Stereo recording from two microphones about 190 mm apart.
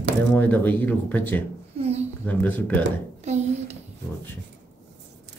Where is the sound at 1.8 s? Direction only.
35° right (ahead or behind).